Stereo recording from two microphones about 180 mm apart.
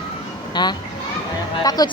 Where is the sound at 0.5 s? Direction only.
25° left (ahead or behind).